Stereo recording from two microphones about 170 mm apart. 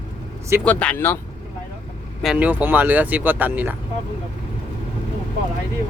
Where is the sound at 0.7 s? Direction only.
10° left (ahead or behind).